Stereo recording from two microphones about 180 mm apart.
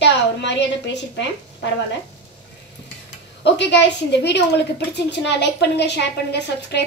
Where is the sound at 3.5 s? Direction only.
75° left (ahead or behind).